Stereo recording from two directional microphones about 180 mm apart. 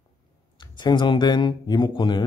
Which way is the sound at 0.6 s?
25° left (ahead or behind).